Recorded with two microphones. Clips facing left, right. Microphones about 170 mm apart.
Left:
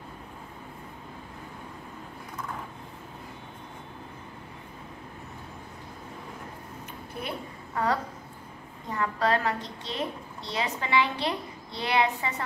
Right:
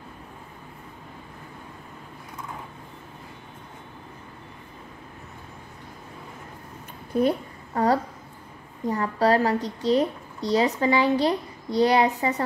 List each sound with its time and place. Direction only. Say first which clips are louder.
7.2 s a woman's voice: right 14 dB; 40° right (ahead or behind)